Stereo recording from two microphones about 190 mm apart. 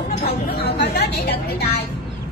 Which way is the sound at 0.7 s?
60° left (ahead or behind).